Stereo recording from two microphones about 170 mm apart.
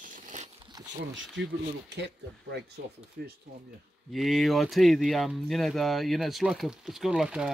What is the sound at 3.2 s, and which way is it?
Speech, 65° right (ahead or behind).